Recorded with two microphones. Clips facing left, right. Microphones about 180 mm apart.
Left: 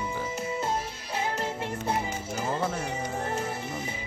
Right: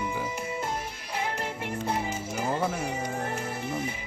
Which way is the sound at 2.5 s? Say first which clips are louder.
Right 1 dB; centre (ahead or behind).